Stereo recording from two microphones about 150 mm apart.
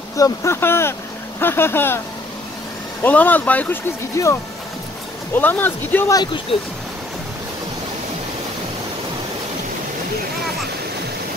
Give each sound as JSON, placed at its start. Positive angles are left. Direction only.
{"t": 0.1, "sound": "speech", "side_deg": 20}
{"t": 3.0, "sound": "speech", "side_deg": 10}